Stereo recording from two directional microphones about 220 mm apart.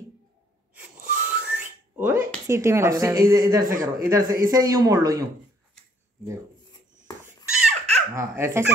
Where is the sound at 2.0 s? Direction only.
10° right (ahead or behind).